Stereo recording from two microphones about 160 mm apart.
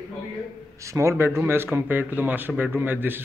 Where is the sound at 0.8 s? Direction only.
20° right (ahead or behind).